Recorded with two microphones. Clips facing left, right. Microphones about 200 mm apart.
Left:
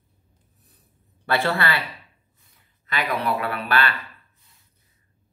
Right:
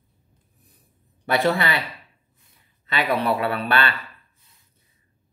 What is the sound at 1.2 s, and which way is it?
Speech, 15° right (ahead or behind).